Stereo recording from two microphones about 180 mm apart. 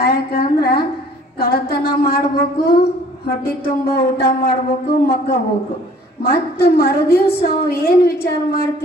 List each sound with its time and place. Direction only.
0.0 s a woman's voice: 60° left (ahead or behind)